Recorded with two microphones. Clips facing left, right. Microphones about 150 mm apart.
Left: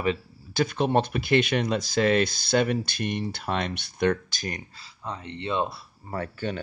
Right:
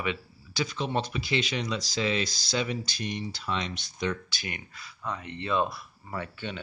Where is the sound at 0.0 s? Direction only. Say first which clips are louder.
Left 6 dB; 45° left (ahead or behind); by 6.1 s 30° left (ahead or behind).